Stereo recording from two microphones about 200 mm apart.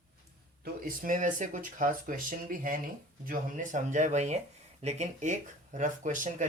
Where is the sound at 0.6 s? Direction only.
45° right (ahead or behind).